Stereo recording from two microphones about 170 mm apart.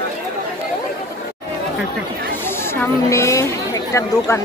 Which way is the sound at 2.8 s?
15° left (ahead or behind).